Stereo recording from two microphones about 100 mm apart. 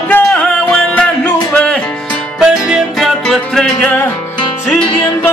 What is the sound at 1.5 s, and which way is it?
Music, 10° left (ahead or behind).